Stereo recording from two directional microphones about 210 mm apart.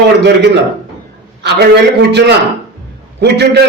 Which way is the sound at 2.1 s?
55° right (ahead or behind).